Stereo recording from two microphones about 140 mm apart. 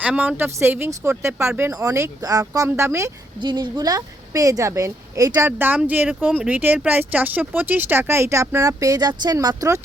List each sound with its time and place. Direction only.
0.0 s a woman's voice: 10° right (ahead or behind)
3.4 s a woman's voice: 30° right (ahead or behind)
5.5 s speech: 15° right (ahead or behind)